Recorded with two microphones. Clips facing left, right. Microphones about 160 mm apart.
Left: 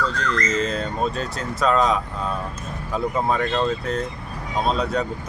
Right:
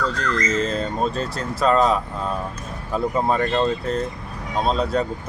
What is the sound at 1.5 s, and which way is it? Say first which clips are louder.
Speech: right 2 dB; centre (ahead or behind).